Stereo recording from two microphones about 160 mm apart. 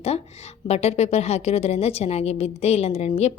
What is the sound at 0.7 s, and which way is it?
A woman's voice, 40° left (ahead or behind).